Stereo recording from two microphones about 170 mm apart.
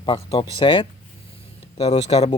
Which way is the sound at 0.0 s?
30° left (ahead or behind).